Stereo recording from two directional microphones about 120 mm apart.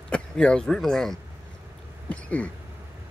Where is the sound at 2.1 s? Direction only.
10° left (ahead or behind).